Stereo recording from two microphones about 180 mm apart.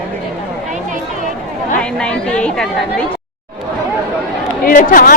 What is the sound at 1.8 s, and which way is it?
A woman's voice, 5° left (ahead or behind).